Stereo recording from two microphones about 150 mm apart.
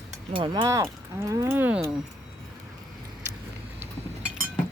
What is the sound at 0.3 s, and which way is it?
Speech, 30° right (ahead or behind).